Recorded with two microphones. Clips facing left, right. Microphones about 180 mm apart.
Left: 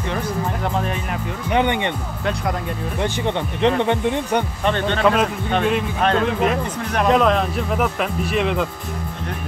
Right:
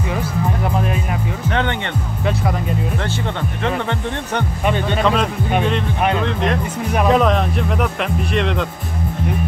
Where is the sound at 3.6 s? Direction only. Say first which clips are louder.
Left 5 dB; 15° left (ahead or behind).